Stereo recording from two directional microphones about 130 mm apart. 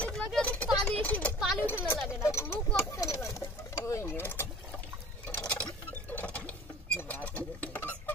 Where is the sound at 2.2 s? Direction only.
25° left (ahead or behind).